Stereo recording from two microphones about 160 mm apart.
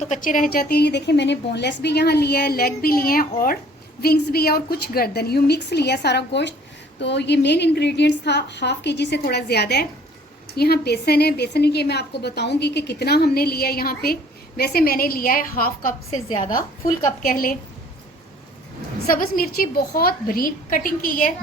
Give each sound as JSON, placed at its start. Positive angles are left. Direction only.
{"t": 0.0, "sound": "a woman's voice", "side_deg": 50}
{"t": 4.0, "sound": "a woman's voice", "side_deg": 80}
{"t": 16.3, "sound": "a woman's voice", "side_deg": 30}
{"t": 17.2, "sound": "a woman's voice", "side_deg": 65}
{"t": 19.1, "sound": "a woman's voice", "side_deg": 65}